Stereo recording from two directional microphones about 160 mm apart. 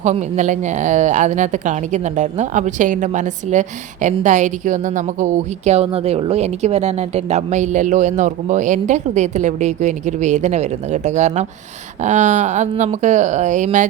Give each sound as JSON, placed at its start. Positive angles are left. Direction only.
{"t": 0.0, "sound": "speech", "side_deg": -50}